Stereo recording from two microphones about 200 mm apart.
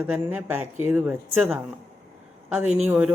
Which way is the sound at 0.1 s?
10° right (ahead or behind).